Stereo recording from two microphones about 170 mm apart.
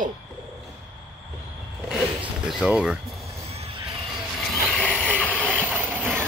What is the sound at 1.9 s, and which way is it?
Vehicle, 5° right (ahead or behind).